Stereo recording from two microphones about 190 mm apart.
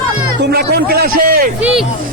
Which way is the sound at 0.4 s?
60° right (ahead or behind).